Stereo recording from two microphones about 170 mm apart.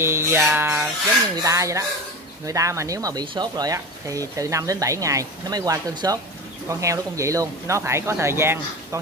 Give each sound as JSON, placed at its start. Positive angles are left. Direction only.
{"t": 0.0, "sound": "speech", "side_deg": -15}